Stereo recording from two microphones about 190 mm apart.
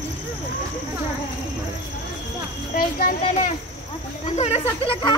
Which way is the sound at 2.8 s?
50° left (ahead or behind).